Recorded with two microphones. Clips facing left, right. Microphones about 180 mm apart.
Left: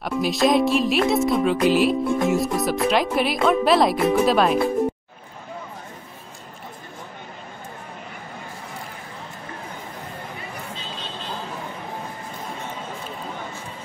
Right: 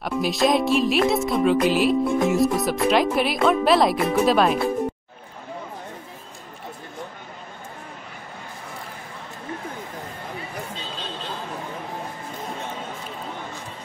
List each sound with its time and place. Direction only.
0.0 s speech: centre (ahead or behind)